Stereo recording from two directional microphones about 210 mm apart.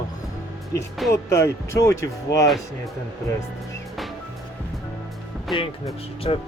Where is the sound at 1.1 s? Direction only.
15° left (ahead or behind).